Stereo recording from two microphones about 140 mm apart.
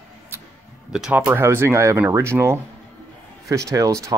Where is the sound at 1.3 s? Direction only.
20° right (ahead or behind).